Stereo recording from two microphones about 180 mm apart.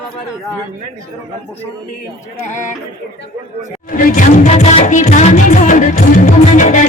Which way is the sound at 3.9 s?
45° left (ahead or behind).